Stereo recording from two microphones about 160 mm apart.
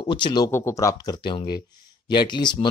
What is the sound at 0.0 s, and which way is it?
Speech, 30° left (ahead or behind).